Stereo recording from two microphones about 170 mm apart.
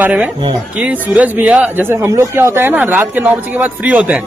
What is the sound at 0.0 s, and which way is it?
Speech, 10° right (ahead or behind).